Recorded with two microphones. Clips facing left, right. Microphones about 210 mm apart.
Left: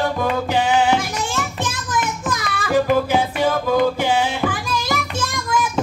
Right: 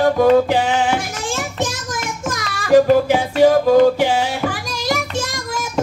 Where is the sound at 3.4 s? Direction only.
40° right (ahead or behind).